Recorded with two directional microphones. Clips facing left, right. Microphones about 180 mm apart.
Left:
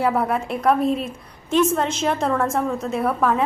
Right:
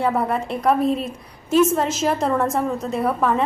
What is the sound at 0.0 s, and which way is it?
A woman's voice, centre (ahead or behind).